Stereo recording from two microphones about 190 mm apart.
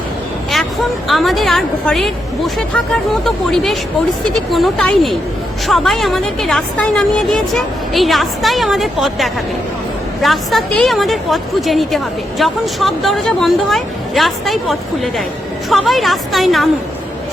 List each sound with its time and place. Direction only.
0.5 s a woman's voice: centre (ahead or behind)